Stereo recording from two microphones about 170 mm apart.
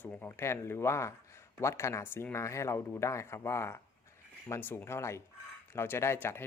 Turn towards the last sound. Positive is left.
turn(degrees=15)  # may be behind; listen again after turning